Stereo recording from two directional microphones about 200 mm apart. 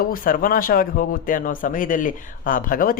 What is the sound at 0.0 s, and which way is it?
Speech, 45° left (ahead or behind).